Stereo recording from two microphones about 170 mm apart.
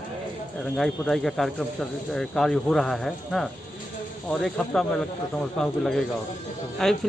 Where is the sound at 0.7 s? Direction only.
Centre (ahead or behind).